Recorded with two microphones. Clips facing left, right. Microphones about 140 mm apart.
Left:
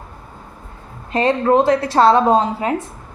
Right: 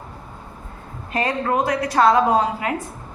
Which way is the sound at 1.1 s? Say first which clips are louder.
Left 7 dB; 25° left (ahead or behind).